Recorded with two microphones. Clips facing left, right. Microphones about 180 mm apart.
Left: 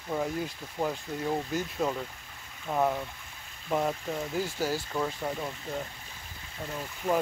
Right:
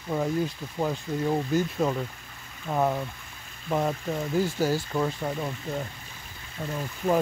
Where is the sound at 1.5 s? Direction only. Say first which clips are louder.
Right 5 dB; 5° right (ahead or behind).